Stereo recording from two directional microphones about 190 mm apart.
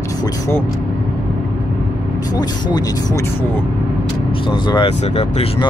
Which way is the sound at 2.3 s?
20° left (ahead or behind).